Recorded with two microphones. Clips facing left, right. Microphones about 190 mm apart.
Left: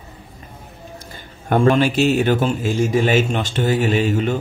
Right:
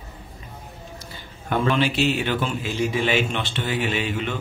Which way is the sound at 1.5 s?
45° left (ahead or behind).